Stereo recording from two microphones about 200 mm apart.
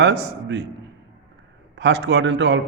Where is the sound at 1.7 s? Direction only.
60° right (ahead or behind).